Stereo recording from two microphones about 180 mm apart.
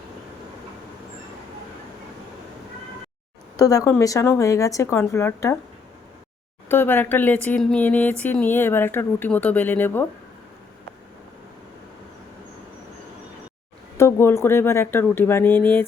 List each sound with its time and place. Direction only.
3.6 s speech: 20° left (ahead or behind)
6.7 s speech: 10° left (ahead or behind)
13.9 s speech: 15° left (ahead or behind)